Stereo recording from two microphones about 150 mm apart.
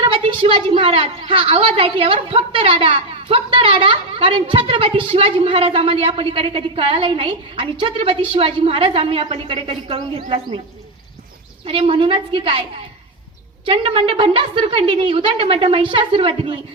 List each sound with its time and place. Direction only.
0.0 s a woman's voice: 35° right (ahead or behind)
11.6 s a woman's voice: 35° right (ahead or behind)
13.7 s a woman's voice: 35° right (ahead or behind)